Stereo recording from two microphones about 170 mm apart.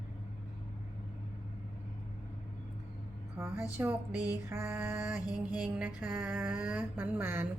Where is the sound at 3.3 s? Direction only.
10° right (ahead or behind).